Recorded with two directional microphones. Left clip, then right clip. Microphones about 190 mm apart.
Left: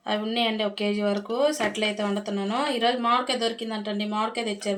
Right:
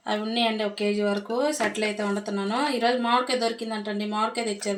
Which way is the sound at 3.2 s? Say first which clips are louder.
Right 1 dB; 35° left (ahead or behind).